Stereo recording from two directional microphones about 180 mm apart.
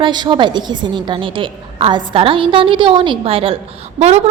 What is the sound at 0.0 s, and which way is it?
A woman's voice, 25° right (ahead or behind).